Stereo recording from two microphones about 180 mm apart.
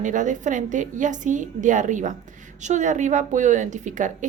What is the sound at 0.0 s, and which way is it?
A woman's voice, 45° right (ahead or behind).